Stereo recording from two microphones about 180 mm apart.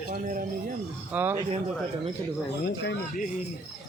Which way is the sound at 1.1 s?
10° right (ahead or behind).